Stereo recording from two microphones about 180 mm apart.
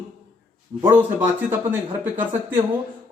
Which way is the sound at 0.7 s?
20° right (ahead or behind).